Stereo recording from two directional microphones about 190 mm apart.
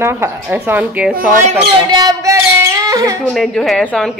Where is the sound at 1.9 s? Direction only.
20° right (ahead or behind).